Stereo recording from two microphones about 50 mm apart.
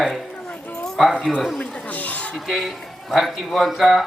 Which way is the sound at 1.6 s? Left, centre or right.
Left.